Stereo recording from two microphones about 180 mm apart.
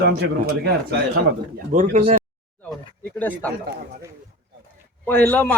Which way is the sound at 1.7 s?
40° right (ahead or behind).